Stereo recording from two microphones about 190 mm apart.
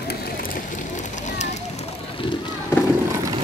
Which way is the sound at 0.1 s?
50° left (ahead or behind).